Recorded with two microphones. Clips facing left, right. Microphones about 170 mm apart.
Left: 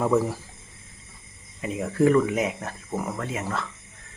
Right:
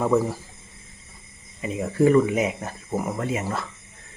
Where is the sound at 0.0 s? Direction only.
Centre (ahead or behind).